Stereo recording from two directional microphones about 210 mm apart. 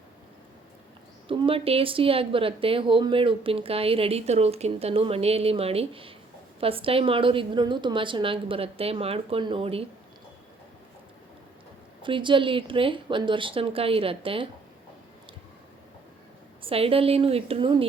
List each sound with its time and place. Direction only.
1.3 s speech: 25° right (ahead or behind)
12.0 s speech: 25° right (ahead or behind)
16.6 s speech: 25° right (ahead or behind)